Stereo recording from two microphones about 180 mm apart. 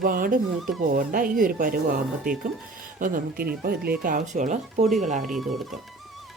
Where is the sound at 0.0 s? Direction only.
50° right (ahead or behind).